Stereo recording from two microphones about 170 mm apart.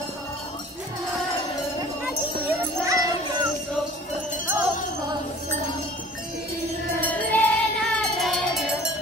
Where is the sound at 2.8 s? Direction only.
20° right (ahead or behind).